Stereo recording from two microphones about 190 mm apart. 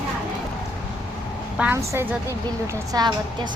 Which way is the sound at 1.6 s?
10° right (ahead or behind).